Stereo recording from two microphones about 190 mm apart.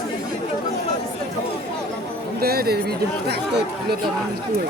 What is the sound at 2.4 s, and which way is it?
Speech, 55° right (ahead or behind).